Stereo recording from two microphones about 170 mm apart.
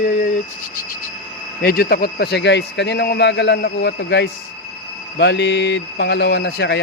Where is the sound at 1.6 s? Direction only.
65° left (ahead or behind).